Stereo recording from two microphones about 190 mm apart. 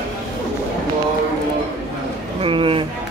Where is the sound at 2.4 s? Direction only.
30° right (ahead or behind).